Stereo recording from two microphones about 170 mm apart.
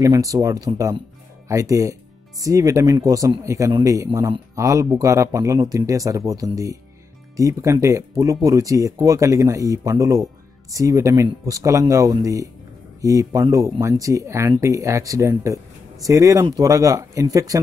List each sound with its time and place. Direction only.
0.0 s speech: 20° right (ahead or behind)